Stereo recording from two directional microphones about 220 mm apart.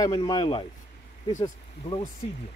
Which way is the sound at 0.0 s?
20° left (ahead or behind).